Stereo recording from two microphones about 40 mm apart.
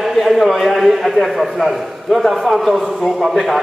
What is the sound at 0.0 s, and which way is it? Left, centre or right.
A man's voice, centre.